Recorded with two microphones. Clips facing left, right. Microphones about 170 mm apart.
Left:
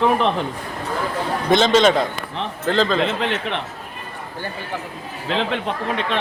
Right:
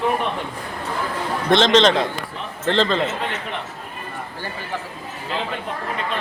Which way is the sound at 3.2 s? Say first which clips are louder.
Left 4 dB; 75° left (ahead or behind).